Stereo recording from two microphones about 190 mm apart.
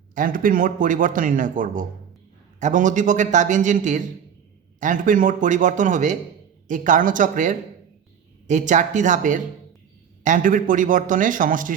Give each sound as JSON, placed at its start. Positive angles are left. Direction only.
{"t": 0.1, "sound": "a man's voice", "side_deg": -45}